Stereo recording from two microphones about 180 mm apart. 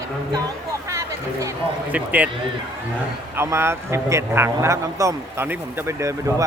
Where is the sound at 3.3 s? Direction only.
15° right (ahead or behind).